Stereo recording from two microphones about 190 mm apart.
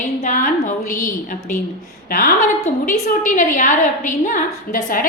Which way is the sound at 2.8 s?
40° left (ahead or behind).